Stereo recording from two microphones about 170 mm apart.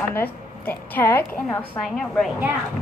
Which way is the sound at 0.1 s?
10° left (ahead or behind).